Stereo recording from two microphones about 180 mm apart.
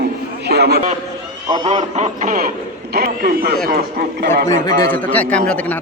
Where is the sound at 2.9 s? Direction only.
60° right (ahead or behind).